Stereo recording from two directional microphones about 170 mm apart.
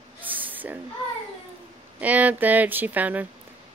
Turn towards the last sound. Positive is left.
turn(degrees=-10)  # may be behind; listen again after turning